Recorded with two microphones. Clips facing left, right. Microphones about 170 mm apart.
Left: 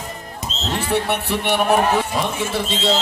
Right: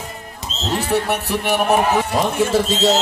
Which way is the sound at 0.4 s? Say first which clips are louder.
Left 2 dB; 20° left (ahead or behind).